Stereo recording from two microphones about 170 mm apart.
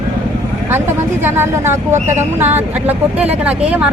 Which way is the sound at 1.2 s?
15° right (ahead or behind).